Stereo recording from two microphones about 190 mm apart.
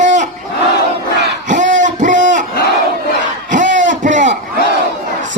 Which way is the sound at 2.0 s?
40° right (ahead or behind).